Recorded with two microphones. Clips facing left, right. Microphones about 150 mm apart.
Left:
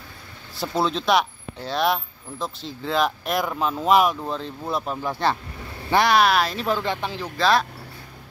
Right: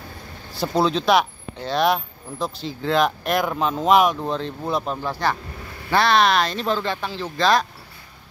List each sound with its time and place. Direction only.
0.6 s speech: centre (ahead or behind)
5.0 s speech: 25° left (ahead or behind)
5.9 s speech: 15° left (ahead or behind)
6.8 s speech: 20° left (ahead or behind)
7.3 s speech: centre (ahead or behind)